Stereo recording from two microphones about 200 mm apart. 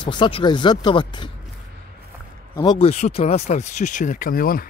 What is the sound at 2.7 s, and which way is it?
Speech, 35° left (ahead or behind).